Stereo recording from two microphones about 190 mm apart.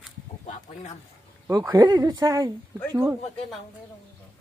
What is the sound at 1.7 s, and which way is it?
Speech, 25° right (ahead or behind).